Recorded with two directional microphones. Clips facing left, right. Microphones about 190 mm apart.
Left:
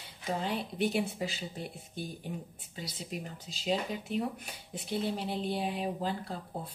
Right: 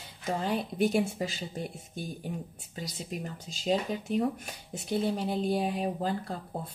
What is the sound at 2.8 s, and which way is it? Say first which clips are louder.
Speech: right 3 dB; 45° right (ahead or behind).